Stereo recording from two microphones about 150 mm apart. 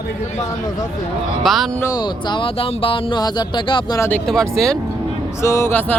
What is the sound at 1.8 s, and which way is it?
Speech, 25° left (ahead or behind).